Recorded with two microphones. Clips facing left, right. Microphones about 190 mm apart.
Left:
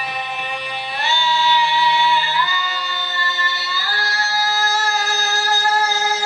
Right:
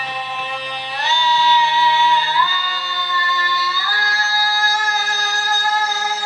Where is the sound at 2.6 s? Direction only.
25° left (ahead or behind).